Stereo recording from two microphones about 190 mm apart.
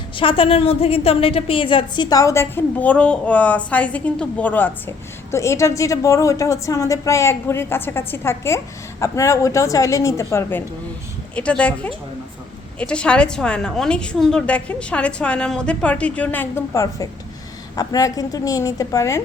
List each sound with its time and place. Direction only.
0.2 s a woman's voice: 30° left (ahead or behind)